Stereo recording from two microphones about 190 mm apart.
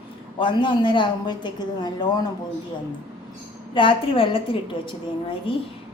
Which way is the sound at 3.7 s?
25° left (ahead or behind).